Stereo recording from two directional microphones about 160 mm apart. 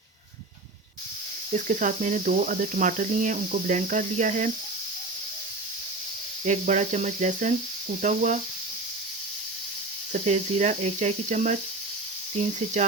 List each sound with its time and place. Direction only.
1.5 s cricket: 50° right (ahead or behind)
6.4 s cricket: 50° right (ahead or behind)
10.1 s cricket: 50° right (ahead or behind)